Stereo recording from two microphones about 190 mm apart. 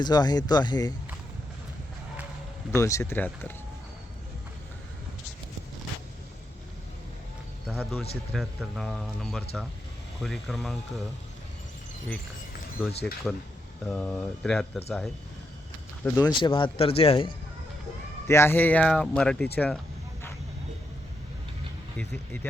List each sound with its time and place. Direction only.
0.0 s speech: 20° left (ahead or behind)
2.7 s speech: 15° left (ahead or behind)
7.7 s speech: 5° right (ahead or behind)
13.8 s speech: 5° left (ahead or behind)
16.1 s speech: 20° left (ahead or behind)
18.3 s speech: 10° left (ahead or behind)
21.9 s speech: 5° left (ahead or behind)